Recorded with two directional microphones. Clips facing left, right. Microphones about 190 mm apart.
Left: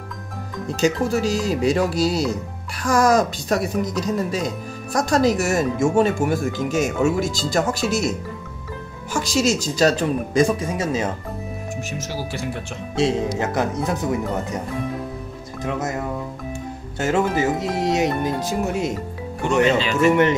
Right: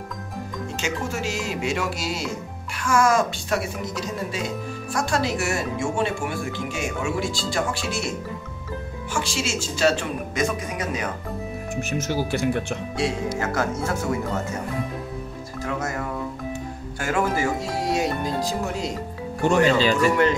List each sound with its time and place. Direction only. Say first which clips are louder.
0.7 s speech: left 9 dB; 35° left (ahead or behind)
9.1 s speech: left 7 dB; 40° left (ahead or behind)
12.0 s speech: right 4 dB; 55° right (ahead or behind)
12.9 s speech: left 6 dB; 20° left (ahead or behind)
15.6 s speech: left 3 dB; 20° left (ahead or behind)
20.1 s speech: left 3 dB; 25° left (ahead or behind)